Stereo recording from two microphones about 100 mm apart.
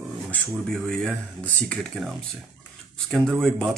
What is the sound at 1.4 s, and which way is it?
Mantra, 15° left (ahead or behind).